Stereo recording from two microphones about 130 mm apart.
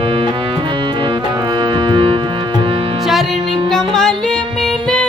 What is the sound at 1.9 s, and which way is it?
Music, 40° right (ahead or behind).